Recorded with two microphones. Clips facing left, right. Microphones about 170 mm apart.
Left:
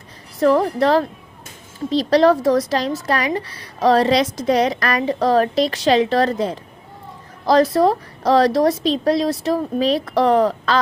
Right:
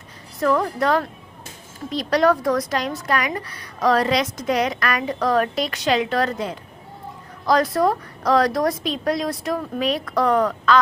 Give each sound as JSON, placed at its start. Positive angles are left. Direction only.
{"t": 0.3, "sound": "a woman's voice", "side_deg": 30}